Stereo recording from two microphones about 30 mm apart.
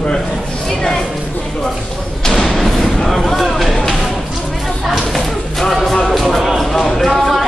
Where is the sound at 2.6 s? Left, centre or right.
Centre.